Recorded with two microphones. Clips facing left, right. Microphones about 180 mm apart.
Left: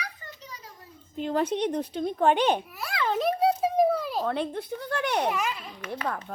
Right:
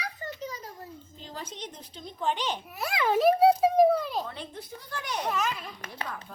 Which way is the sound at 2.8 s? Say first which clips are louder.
Right 1 dB; 20° right (ahead or behind).